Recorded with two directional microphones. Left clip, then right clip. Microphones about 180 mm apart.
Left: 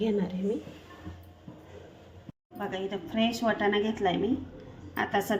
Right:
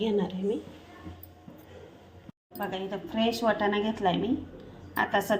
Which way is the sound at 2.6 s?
5° right (ahead or behind).